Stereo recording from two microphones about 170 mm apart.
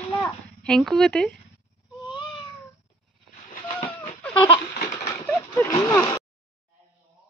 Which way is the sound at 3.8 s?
30° left (ahead or behind).